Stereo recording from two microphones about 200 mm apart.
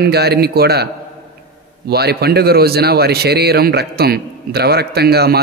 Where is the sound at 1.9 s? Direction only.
50° right (ahead or behind).